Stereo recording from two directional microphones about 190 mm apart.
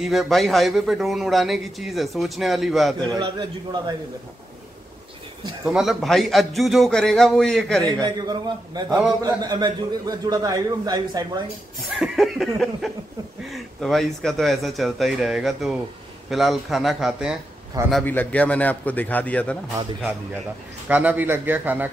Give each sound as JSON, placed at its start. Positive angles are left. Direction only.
{"t": 0.0, "sound": "a man's voice", "side_deg": 0}
{"t": 3.2, "sound": "a man's voice", "side_deg": -20}
{"t": 5.7, "sound": "a man's voice", "side_deg": 0}
{"t": 7.8, "sound": "a man's voice", "side_deg": -20}
{"t": 12.0, "sound": "a man's voice", "side_deg": 0}
{"t": 17.9, "sound": "a man's voice", "side_deg": 10}
{"t": 20.9, "sound": "a man's voice", "side_deg": -10}